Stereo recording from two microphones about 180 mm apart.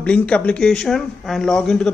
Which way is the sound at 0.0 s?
5° left (ahead or behind).